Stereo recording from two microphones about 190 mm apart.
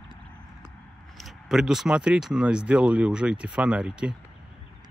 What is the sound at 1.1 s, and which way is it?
Speech, centre (ahead or behind).